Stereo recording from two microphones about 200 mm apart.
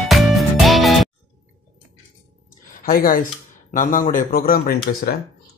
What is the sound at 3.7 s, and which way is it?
Speech, 40° left (ahead or behind).